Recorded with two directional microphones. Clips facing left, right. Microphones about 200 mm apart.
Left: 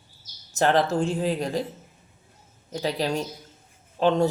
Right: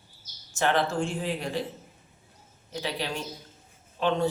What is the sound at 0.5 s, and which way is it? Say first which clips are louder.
A man's voice: left 4 dB; 40° left (ahead or behind).